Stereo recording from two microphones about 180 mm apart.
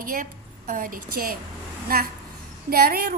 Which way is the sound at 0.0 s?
50° right (ahead or behind).